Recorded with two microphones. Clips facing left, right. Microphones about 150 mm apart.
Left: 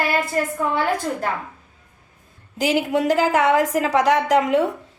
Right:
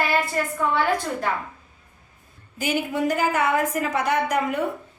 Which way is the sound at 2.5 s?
90° left.